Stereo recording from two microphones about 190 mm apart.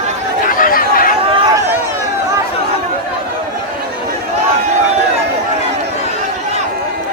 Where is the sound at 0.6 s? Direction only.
50° left (ahead or behind).